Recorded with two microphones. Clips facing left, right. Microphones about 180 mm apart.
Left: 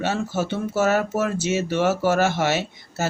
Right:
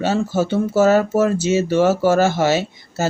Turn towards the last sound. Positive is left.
turn(degrees=-30)  # may be behind; listen again after turning